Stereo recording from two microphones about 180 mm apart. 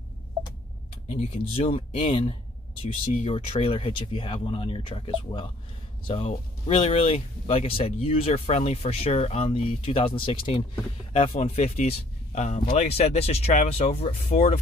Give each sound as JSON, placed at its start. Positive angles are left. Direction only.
{"t": 1.0, "sound": "speech", "side_deg": 35}